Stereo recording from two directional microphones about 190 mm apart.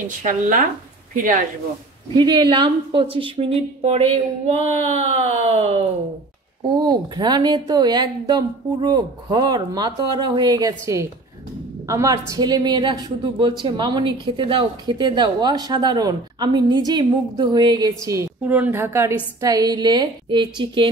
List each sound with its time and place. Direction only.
0.2 s speech: 45° right (ahead or behind)
2.1 s a woman's voice: 25° right (ahead or behind)
6.9 s a woman's voice: 20° right (ahead or behind)